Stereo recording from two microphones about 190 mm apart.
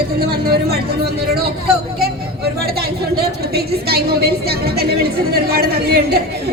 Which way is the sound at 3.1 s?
55° right (ahead or behind).